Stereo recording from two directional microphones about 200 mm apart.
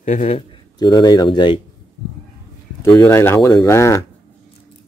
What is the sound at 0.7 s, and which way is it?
Speech, 20° left (ahead or behind).